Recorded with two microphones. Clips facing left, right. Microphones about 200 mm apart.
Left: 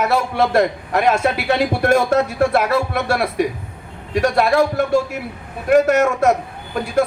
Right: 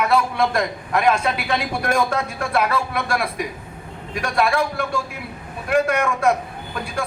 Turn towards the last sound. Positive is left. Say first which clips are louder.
# left 8 dB
turn(degrees=40)  # may be behind; listen again after turning